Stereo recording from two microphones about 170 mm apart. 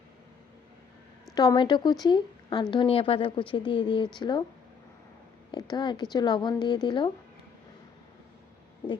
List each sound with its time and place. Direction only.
1.4 s a woman's voice: 25° left (ahead or behind)
5.5 s a woman's voice: 25° left (ahead or behind)